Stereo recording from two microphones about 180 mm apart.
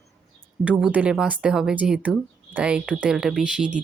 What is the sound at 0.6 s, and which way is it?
Speech, 5° right (ahead or behind).